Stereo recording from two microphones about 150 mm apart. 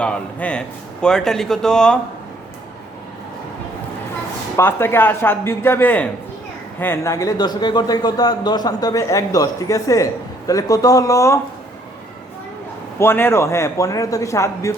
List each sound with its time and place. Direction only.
0.0 s speech: 10° left (ahead or behind)
4.5 s a man's voice: 15° left (ahead or behind)
13.0 s a man's voice: 15° left (ahead or behind)